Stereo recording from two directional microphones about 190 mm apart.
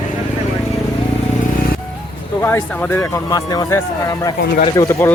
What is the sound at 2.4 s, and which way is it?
A man's voice, 15° left (ahead or behind).